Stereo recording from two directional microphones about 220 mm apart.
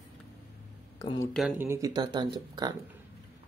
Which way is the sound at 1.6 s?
15° right (ahead or behind).